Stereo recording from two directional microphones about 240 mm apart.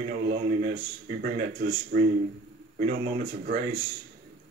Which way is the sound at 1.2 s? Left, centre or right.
Right.